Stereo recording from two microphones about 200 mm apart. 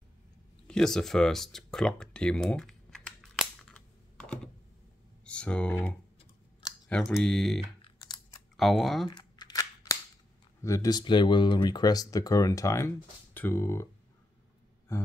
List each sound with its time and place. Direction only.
0.7 s a sound: centre (ahead or behind)
5.2 s speech: 5° left (ahead or behind)
7.8 s computer keyboard: 20° left (ahead or behind)
8.5 s speech: centre (ahead or behind)
9.1 s a sound: 20° left (ahead or behind)
10.6 s speech: 15° left (ahead or behind)
14.9 s speech: 15° left (ahead or behind)